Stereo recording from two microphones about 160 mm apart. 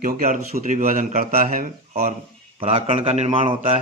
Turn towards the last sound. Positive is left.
turn(degrees=-35)  # may be behind; listen again after turning